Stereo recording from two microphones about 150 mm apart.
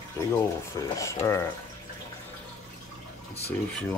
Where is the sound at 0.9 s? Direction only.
20° left (ahead or behind).